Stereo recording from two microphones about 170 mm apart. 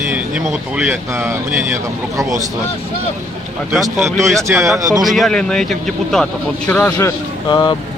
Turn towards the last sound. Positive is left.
turn(degrees=25)  # may be behind; listen again after turning